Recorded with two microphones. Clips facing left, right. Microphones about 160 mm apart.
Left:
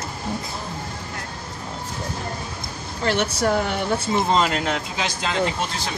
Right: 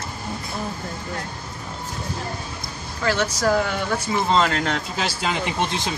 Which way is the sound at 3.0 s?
30° left (ahead or behind).